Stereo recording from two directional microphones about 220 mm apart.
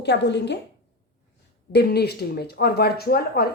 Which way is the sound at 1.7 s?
50° left (ahead or behind).